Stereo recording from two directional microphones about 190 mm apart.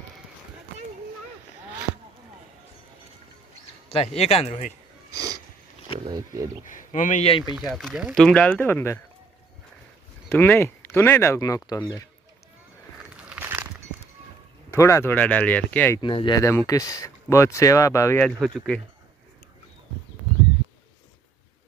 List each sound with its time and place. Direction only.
3.9 s speech: 35° left (ahead or behind)
5.1 s sniff: 20° right (ahead or behind)
6.1 s speech: 15° right (ahead or behind)
6.7 s speech: 40° left (ahead or behind)
7.5 s speech: centre (ahead or behind)
10.3 s speech: 10° left (ahead or behind)
13.1 s a sound: 10° right (ahead or behind)
14.7 s speech: 15° left (ahead or behind)
16.0 s speech: 25° left (ahead or behind)